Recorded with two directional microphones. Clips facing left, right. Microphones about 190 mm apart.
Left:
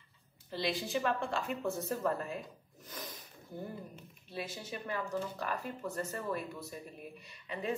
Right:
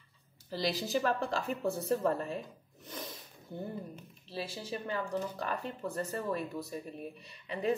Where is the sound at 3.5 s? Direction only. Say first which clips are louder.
Right 3 dB; 25° right (ahead or behind).